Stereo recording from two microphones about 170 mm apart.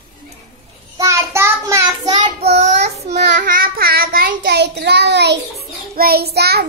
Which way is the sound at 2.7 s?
75° right (ahead or behind).